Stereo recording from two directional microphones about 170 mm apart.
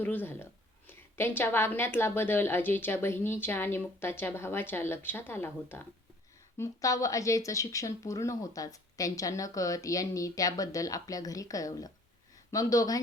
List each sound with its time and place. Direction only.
0.0 s a woman's voice: 10° left (ahead or behind)